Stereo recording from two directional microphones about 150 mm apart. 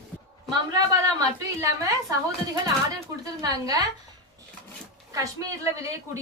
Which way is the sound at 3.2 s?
25° right (ahead or behind).